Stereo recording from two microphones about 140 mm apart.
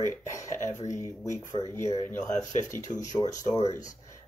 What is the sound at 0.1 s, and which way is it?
Speech, 20° left (ahead or behind).